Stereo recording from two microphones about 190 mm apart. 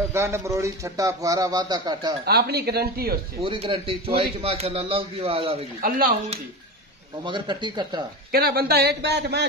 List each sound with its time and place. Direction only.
0.1 s a man's voice: 15° right (ahead or behind)
2.2 s a man's voice: 60° right (ahead or behind)
3.3 s a man's voice: 30° right (ahead or behind)
5.8 s speech: 50° right (ahead or behind)
7.2 s speech: 25° right (ahead or behind)
8.3 s a man's voice: 55° right (ahead or behind)